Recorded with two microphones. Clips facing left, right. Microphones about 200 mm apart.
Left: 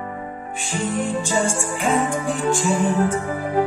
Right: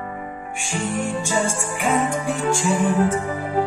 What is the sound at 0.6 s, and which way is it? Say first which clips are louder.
Music: left 1 dB; 15° right (ahead or behind).